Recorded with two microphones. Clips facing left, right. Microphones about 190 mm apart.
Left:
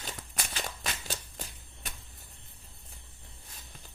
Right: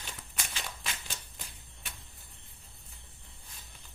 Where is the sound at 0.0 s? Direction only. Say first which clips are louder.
Left 4 dB; 40° left (ahead or behind).